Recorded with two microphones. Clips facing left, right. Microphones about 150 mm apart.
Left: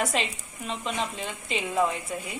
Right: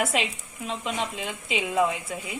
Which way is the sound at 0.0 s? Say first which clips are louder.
Right 1 dB; centre (ahead or behind).